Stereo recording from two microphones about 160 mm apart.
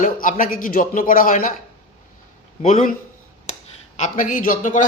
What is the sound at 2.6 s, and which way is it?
A man's voice, 55° left (ahead or behind).